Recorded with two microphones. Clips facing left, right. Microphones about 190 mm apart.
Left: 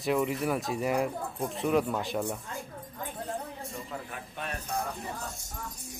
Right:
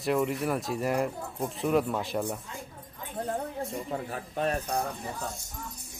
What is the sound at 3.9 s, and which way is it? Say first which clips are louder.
Speech: right 6 dB; 35° right (ahead or behind).